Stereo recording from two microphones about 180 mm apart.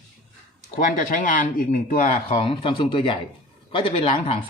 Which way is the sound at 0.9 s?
50° left (ahead or behind).